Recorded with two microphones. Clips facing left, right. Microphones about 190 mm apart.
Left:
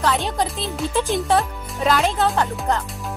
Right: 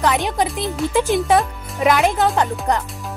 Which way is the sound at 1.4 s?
Centre (ahead or behind).